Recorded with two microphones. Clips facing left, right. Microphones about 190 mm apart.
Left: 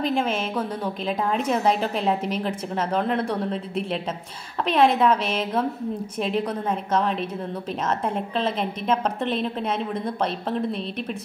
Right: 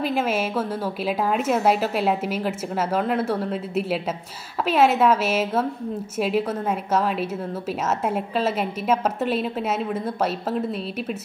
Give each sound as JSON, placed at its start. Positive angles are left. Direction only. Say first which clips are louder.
{"t": 0.0, "sound": "a woman's voice", "louder": "right 1 dB", "side_deg": -5}